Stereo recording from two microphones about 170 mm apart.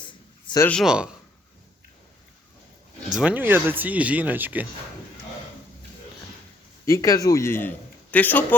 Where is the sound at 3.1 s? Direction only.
5° right (ahead or behind).